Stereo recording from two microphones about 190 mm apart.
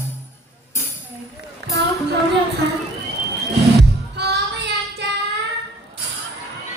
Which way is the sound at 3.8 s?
60° right (ahead or behind).